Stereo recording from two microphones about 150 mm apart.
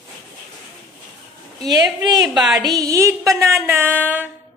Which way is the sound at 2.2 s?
Centre (ahead or behind).